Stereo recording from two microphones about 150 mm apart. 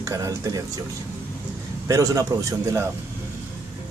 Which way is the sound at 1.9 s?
20° right (ahead or behind).